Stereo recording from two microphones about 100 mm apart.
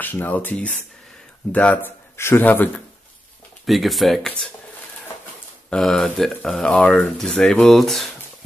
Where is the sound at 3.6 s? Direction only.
Centre (ahead or behind).